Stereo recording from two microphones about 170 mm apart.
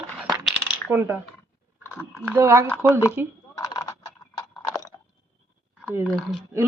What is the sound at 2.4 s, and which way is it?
Speech, 15° right (ahead or behind).